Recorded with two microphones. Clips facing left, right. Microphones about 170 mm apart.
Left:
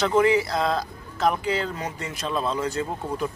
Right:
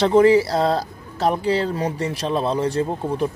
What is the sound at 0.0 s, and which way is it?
Speech, 35° right (ahead or behind).